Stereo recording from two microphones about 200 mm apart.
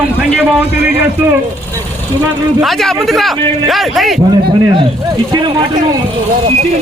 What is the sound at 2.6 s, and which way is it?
A man's voice, centre (ahead or behind).